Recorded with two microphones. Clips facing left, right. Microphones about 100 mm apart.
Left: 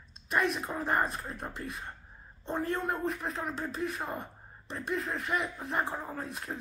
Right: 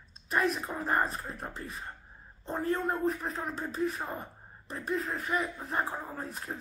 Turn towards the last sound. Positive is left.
turn(degrees=0)  # may be behind; listen again after turning